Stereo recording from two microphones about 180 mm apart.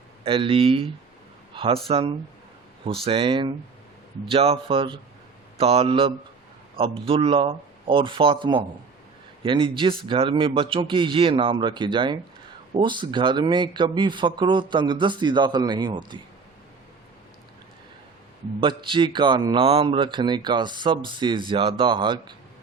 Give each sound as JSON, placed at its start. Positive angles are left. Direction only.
{"t": 0.3, "sound": "speech", "side_deg": -30}
{"t": 18.8, "sound": "speech", "side_deg": -25}